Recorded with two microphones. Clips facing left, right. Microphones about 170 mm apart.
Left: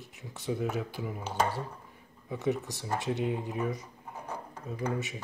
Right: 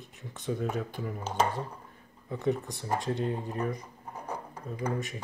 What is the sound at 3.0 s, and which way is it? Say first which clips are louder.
Speech: even; 10° left (ahead or behind).